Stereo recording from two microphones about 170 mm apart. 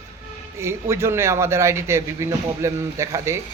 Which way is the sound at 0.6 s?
15° right (ahead or behind).